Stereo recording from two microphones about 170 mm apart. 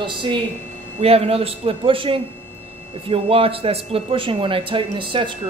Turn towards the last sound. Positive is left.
turn(degrees=-30)  # may be behind; listen again after turning